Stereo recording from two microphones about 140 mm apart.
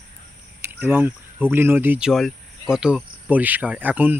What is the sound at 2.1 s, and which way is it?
Speech, centre (ahead or behind).